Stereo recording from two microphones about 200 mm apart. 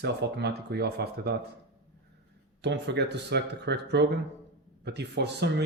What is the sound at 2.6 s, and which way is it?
Speech, 60° right (ahead or behind).